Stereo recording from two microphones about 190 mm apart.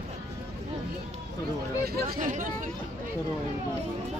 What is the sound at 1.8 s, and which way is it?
Chatter, 50° right (ahead or behind).